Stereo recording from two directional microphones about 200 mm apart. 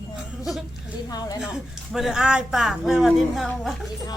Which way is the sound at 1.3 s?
5° right (ahead or behind).